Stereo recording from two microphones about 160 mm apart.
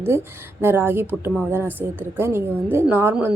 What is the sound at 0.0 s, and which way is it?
A woman's voice, 15° right (ahead or behind).